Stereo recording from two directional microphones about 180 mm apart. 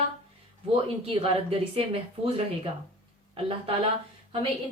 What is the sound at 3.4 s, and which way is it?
Speech, 30° right (ahead or behind).